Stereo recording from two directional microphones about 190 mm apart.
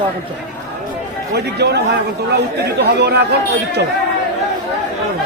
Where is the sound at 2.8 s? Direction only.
60° right (ahead or behind).